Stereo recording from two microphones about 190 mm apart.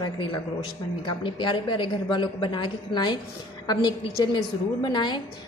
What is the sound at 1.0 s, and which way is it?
A woman's voice, 25° left (ahead or behind).